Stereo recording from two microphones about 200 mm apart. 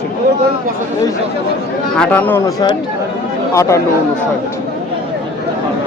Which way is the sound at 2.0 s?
10° left (ahead or behind).